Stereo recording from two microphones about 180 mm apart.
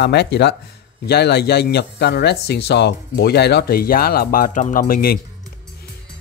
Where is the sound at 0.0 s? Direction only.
70° left (ahead or behind).